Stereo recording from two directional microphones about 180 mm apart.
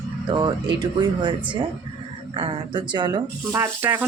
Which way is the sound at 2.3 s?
25° right (ahead or behind).